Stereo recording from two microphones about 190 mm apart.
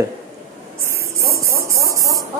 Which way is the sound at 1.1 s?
15° right (ahead or behind).